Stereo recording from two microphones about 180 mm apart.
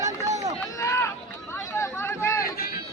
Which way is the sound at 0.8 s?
15° left (ahead or behind).